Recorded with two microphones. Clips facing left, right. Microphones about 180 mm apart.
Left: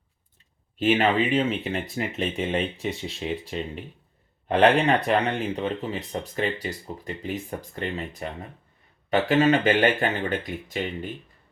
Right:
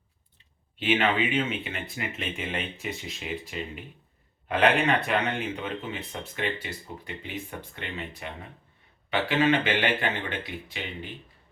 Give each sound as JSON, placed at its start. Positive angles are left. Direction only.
{"t": 0.8, "sound": "speech", "side_deg": 40}